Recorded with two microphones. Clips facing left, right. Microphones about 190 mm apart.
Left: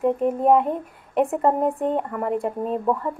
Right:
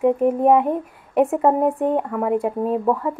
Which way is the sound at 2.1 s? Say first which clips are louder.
Right 4 dB; 55° right (ahead or behind).